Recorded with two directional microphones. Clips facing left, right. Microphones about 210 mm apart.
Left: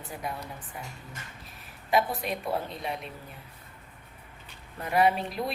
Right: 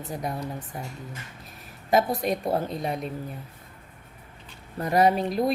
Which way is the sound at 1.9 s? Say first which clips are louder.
Right 4 dB; 40° right (ahead or behind).